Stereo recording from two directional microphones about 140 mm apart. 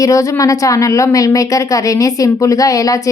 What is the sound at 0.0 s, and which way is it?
A woman's voice, 25° left (ahead or behind).